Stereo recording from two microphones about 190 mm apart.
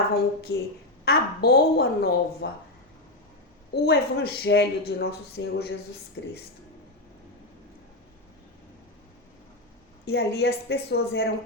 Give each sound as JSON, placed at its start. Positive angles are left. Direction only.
{"t": 0.5, "sound": "a woman's voice", "side_deg": 90}
{"t": 1.0, "sound": "speech", "side_deg": 55}
{"t": 3.7, "sound": "speech", "side_deg": 60}
{"t": 10.1, "sound": "speech", "side_deg": 60}